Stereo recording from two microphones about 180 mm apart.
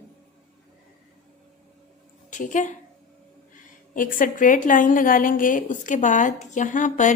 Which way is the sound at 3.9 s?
50° left (ahead or behind).